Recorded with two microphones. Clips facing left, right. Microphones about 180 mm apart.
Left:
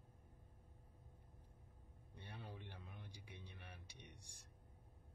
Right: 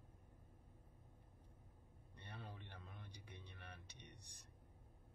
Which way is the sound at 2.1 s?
10° left (ahead or behind).